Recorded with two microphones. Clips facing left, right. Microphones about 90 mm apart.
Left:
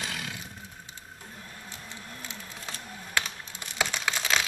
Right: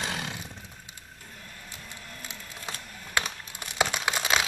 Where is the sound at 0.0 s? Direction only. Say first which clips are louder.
Right 3 dB; 30° right (ahead or behind).